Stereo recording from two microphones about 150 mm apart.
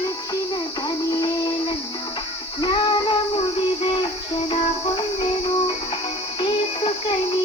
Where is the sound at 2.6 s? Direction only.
30° left (ahead or behind).